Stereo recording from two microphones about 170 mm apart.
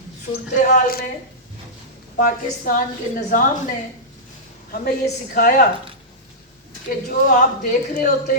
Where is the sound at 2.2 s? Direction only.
55° left (ahead or behind).